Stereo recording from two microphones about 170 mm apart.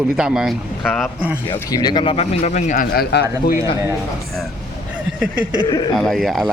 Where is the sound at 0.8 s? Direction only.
10° left (ahead or behind).